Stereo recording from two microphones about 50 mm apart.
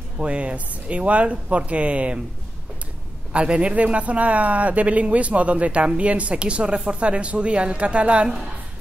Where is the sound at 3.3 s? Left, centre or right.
Right.